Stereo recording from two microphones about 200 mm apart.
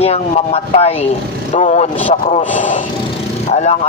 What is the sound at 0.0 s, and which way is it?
A man's voice, 30° left (ahead or behind).